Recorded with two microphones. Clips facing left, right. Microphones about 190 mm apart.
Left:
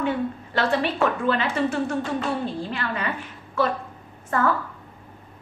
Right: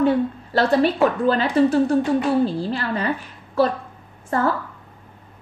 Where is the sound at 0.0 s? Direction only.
35° right (ahead or behind).